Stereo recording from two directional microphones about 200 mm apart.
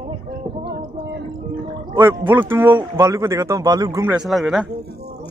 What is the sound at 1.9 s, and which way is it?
A man's voice, 20° right (ahead or behind).